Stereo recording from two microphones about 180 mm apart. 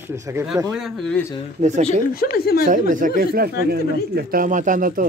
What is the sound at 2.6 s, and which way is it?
Speech, 45° right (ahead or behind).